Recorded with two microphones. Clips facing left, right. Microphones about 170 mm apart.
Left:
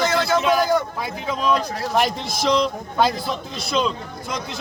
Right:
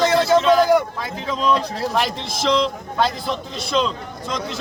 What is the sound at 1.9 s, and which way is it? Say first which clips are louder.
Speech: left 5 dB; centre (ahead or behind).